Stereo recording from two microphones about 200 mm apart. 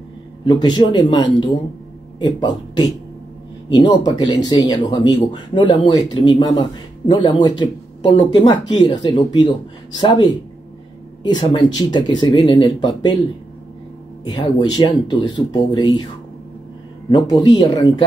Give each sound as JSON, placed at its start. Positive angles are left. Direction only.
{"t": 0.5, "sound": "speech", "side_deg": 20}
{"t": 14.3, "sound": "speech", "side_deg": 25}
{"t": 17.1, "sound": "speech", "side_deg": 20}